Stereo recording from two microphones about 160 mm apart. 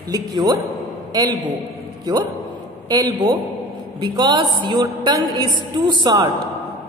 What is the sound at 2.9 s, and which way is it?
A woman's voice, 25° right (ahead or behind).